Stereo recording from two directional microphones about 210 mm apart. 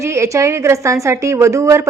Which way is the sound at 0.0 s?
15° right (ahead or behind).